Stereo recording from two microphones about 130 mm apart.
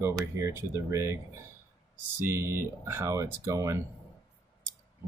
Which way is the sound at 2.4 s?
20° right (ahead or behind).